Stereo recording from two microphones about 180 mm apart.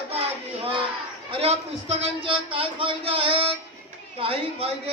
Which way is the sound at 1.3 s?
35° right (ahead or behind).